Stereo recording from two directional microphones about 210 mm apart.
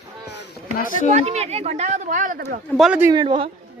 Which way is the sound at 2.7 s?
5° right (ahead or behind).